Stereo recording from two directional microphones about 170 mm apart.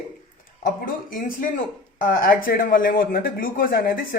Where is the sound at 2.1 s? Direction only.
55° left (ahead or behind).